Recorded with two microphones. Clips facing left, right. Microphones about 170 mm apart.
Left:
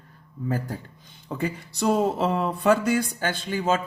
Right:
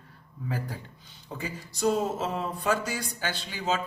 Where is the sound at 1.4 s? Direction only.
65° left (ahead or behind).